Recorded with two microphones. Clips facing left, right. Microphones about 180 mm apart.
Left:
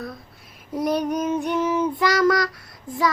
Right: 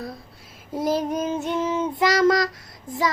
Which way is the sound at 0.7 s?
25° right (ahead or behind).